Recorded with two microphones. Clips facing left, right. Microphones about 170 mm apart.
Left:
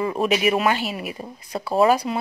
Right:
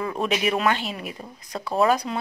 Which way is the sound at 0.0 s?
5° left (ahead or behind).